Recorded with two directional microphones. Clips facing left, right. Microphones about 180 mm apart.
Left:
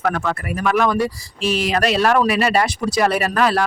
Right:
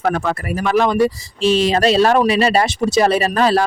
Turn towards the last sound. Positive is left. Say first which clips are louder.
# right 3 dB
turn(degrees=-30)  # may be behind; listen again after turning